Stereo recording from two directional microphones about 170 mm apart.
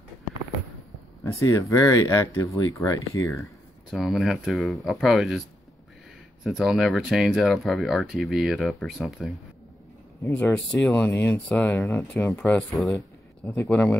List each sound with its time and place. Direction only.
1.2 s speech: 15° left (ahead or behind)
3.9 s speech: centre (ahead or behind)
6.6 s speech: centre (ahead or behind)
10.4 s speech: 5° left (ahead or behind)
13.5 s speech: 10° left (ahead or behind)